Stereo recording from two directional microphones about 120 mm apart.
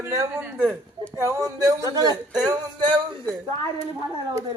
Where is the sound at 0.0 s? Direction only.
20° right (ahead or behind).